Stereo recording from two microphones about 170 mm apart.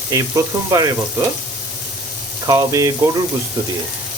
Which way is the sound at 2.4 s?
20° right (ahead or behind).